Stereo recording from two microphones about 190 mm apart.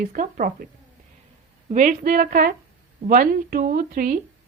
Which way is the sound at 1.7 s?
45° right (ahead or behind).